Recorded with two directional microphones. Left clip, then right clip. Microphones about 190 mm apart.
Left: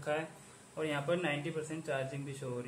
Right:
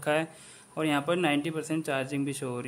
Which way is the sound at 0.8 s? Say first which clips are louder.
Right 7 dB; 45° right (ahead or behind).